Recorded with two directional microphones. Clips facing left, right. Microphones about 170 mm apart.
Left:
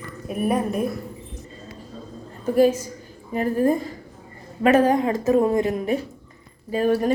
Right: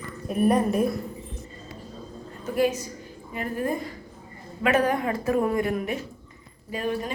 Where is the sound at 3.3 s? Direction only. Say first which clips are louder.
Left 8 dB; 35° left (ahead or behind).